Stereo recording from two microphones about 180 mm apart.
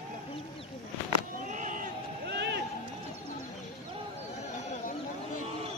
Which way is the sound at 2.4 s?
70° right (ahead or behind).